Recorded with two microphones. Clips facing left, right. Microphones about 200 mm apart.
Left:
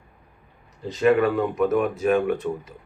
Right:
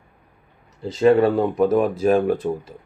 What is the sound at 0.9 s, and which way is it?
Speech, 30° right (ahead or behind).